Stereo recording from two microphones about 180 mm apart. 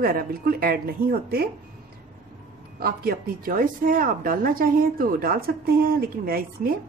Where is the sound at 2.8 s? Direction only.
55° right (ahead or behind).